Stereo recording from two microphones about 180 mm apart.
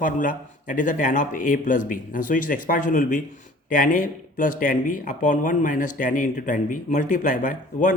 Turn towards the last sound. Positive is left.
turn(degrees=45)  # may be behind; listen again after turning